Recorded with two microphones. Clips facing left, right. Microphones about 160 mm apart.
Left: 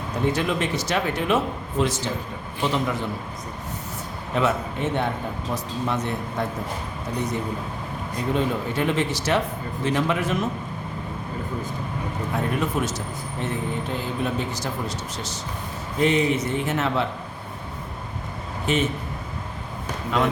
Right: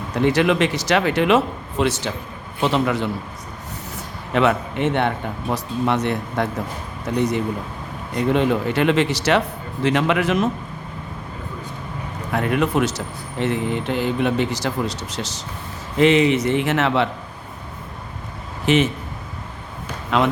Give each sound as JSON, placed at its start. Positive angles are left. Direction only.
{"t": 0.2, "sound": "speech", "side_deg": -80}
{"t": 1.8, "sound": "speech", "side_deg": -70}
{"t": 4.4, "sound": "speech", "side_deg": -75}
{"t": 12.3, "sound": "speech", "side_deg": -80}
{"t": 18.6, "sound": "speech", "side_deg": -90}
{"t": 20.1, "sound": "speech", "side_deg": -90}